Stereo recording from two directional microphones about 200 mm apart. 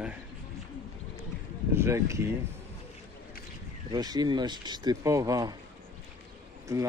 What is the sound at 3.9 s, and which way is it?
Speech, 20° right (ahead or behind).